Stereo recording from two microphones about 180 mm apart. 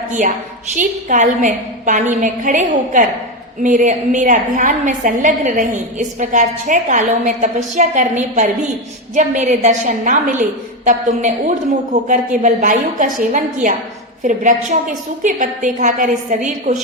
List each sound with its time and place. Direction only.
0.1 s a woman's voice: 45° right (ahead or behind)